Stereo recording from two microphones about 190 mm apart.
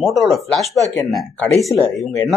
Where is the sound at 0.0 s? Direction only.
Centre (ahead or behind).